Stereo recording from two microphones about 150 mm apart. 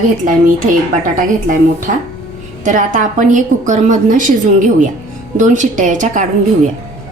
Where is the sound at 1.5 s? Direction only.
60° right (ahead or behind).